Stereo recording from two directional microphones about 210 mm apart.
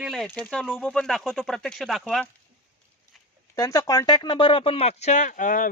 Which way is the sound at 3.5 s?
15° left (ahead or behind).